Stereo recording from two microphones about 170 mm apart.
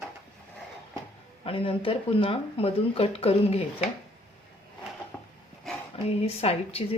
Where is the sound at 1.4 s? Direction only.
30° left (ahead or behind).